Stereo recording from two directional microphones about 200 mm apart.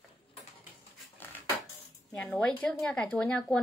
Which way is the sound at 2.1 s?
10° left (ahead or behind).